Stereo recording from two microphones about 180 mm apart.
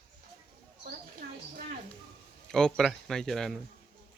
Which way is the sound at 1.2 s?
60° right (ahead or behind).